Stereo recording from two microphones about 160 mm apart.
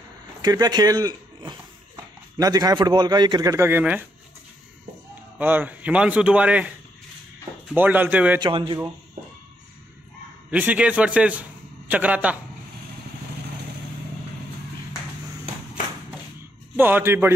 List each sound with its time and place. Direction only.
0.4 s a man's voice: 25° right (ahead or behind)
5.4 s a man's voice: 10° right (ahead or behind)
7.7 s a man's voice: 10° right (ahead or behind)
8.4 s a man's voice: 30° right (ahead or behind)
10.5 s a man's voice: 10° right (ahead or behind)
16.7 s a man's voice: 10° right (ahead or behind)